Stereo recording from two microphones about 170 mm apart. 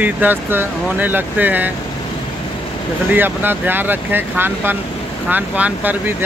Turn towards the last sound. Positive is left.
turn(degrees=-10)  # may be behind; listen again after turning